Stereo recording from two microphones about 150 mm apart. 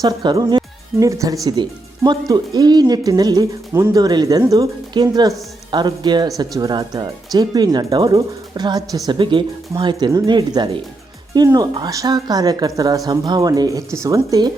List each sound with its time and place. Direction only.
0.0 s speech: 30° right (ahead or behind)